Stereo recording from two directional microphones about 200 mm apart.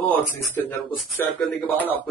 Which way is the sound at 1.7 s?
10° left (ahead or behind).